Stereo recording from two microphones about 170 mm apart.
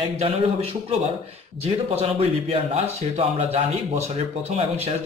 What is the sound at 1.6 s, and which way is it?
Speech, 35° right (ahead or behind).